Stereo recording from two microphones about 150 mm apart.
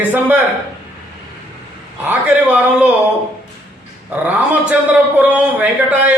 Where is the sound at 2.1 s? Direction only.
10° right (ahead or behind).